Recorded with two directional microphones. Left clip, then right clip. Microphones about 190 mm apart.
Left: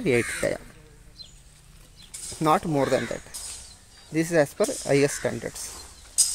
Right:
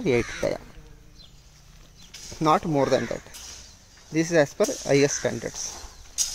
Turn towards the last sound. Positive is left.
turn(degrees=-35)  # may be behind; listen again after turning